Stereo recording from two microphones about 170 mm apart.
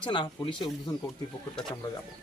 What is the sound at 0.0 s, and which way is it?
Speech, 25° left (ahead or behind).